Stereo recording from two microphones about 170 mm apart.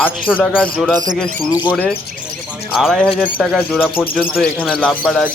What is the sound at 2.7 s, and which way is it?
Speech, centre (ahead or behind).